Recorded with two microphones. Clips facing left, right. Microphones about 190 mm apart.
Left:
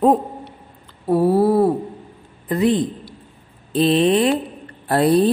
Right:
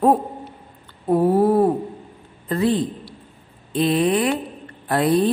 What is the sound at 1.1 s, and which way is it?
A man's voice, 10° left (ahead or behind).